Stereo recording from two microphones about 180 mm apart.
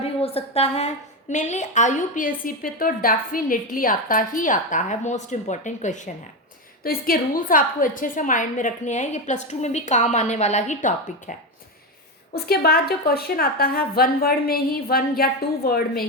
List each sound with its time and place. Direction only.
0.0 s a woman's voice: 35° left (ahead or behind)
12.3 s a woman's voice: 60° left (ahead or behind)